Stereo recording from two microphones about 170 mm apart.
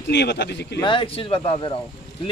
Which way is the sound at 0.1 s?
90° left.